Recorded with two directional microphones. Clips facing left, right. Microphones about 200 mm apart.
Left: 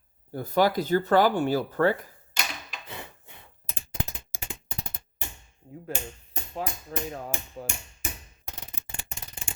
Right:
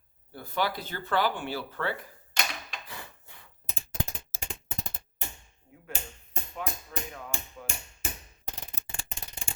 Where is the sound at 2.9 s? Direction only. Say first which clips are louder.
Left 4 dB; 20° left (ahead or behind).